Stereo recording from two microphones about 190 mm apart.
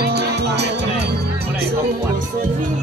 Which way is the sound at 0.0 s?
55° right (ahead or behind).